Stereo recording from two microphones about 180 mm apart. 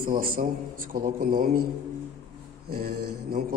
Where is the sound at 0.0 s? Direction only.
50° right (ahead or behind).